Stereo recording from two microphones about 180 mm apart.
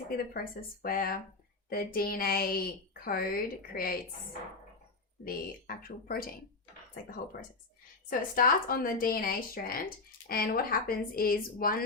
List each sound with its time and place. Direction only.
0.2 s a woman's voice: 55° left (ahead or behind)
5.2 s speech: 55° left (ahead or behind)
8.4 s speech: 50° left (ahead or behind)